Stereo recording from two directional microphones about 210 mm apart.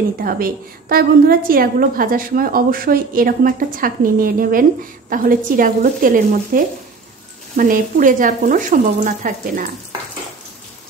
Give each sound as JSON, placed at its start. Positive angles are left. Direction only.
{"t": 0.2, "sound": "a woman's voice", "side_deg": -45}